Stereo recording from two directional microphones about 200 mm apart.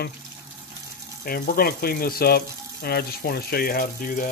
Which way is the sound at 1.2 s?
50° left (ahead or behind).